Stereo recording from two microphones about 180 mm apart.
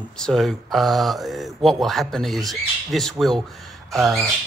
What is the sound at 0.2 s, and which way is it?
Speech, centre (ahead or behind).